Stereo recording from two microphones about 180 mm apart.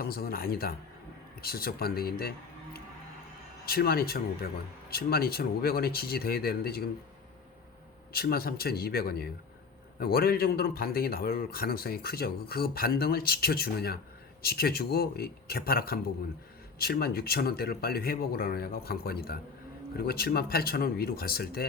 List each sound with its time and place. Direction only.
0.0 s a man's voice: 55° left (ahead or behind)
3.7 s a man's voice: 55° left (ahead or behind)
8.1 s a man's voice: 60° left (ahead or behind)